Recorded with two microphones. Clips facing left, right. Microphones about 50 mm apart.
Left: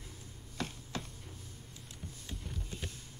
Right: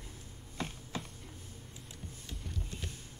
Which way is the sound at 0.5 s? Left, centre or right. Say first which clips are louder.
Even; centre.